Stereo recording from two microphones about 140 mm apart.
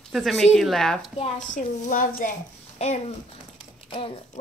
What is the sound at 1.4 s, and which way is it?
Speech, 65° left (ahead or behind).